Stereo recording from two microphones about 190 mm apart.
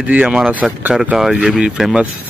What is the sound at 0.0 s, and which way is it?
Speech, 10° right (ahead or behind).